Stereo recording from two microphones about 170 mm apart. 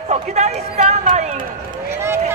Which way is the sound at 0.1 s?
40° right (ahead or behind).